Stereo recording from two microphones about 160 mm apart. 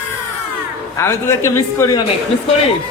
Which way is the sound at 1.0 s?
15° left (ahead or behind).